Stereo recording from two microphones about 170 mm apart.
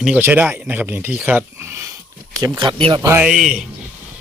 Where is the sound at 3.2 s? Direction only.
5° right (ahead or behind).